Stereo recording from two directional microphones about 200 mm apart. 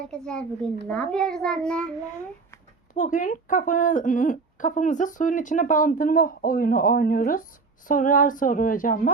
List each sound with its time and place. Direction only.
0.0 s a child's voice: 5° left (ahead or behind)
2.9 s speech: 40° left (ahead or behind)